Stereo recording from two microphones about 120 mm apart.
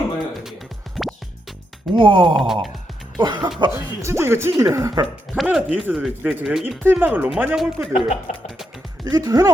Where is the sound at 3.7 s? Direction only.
20° right (ahead or behind).